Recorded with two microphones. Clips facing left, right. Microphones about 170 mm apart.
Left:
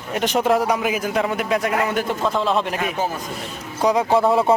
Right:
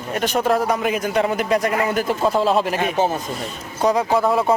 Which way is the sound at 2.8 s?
30° right (ahead or behind).